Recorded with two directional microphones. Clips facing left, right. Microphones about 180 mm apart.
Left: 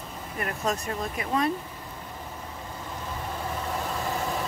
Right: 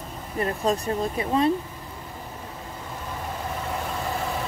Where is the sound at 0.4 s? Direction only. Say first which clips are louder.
Right 5 dB; 30° right (ahead or behind).